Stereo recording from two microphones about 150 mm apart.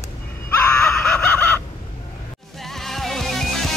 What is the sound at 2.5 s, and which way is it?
Music, centre (ahead or behind).